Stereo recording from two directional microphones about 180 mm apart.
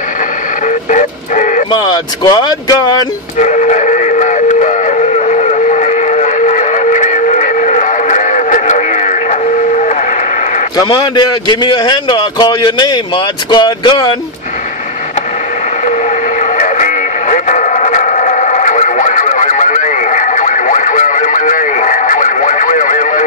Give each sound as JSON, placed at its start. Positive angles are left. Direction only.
{"t": 0.8, "sound": "dog", "side_deg": 45}
{"t": 1.7, "sound": "a man's voice", "side_deg": 25}
{"t": 3.3, "sound": "a sound", "side_deg": 40}
{"t": 10.8, "sound": "a man's voice", "side_deg": 25}
{"t": 16.5, "sound": "music", "side_deg": 45}